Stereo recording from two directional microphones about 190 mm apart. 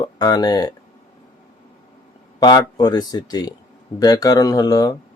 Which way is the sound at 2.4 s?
20° left (ahead or behind).